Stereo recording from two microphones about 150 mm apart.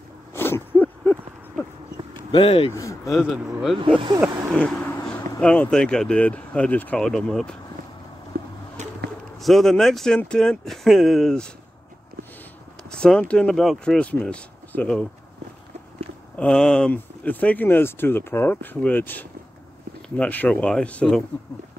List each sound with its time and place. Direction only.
0.3 s a sound: 15° left (ahead or behind)
2.3 s speech: 35° left (ahead or behind)
3.1 s speech: 5° right (ahead or behind)
3.7 s speech: 35° right (ahead or behind)
4.6 s vehicle: 5° left (ahead or behind)
5.4 s speech: 5° left (ahead or behind)
8.3 s a sound: 80° right
9.4 s speech: centre (ahead or behind)
12.9 s speech: 5° left (ahead or behind)
16.3 s speech: 5° left (ahead or behind)